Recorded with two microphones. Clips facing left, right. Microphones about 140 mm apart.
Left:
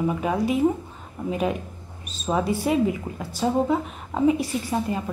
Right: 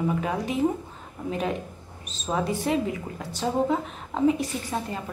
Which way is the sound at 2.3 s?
10° left (ahead or behind).